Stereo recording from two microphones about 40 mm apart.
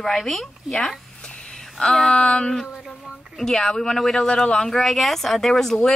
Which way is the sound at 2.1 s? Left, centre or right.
Left.